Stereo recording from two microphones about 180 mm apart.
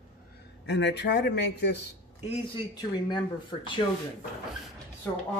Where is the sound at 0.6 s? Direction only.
75° left (ahead or behind).